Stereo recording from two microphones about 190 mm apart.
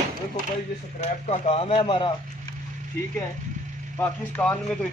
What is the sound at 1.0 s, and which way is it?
Speech, 35° left (ahead or behind).